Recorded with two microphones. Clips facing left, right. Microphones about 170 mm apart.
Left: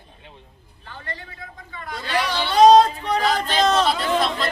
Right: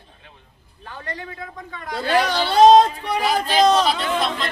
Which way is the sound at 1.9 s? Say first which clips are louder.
Right 5 dB; 50° right (ahead or behind).